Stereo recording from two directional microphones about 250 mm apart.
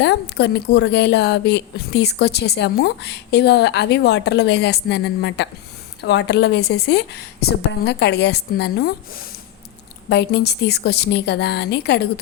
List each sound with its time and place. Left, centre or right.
0.0 s a woman's voice: left